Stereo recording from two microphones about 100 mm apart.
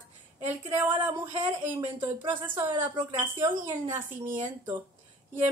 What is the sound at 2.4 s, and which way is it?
A woman's voice, 20° right (ahead or behind).